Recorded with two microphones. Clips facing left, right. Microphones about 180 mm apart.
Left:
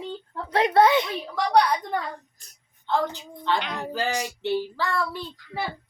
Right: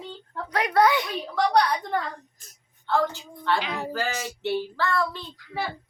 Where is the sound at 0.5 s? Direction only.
25° left (ahead or behind).